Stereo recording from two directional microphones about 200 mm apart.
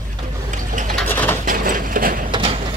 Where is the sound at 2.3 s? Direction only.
25° right (ahead or behind).